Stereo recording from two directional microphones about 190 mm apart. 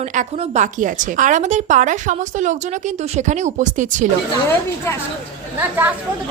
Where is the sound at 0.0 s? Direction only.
40° right (ahead or behind).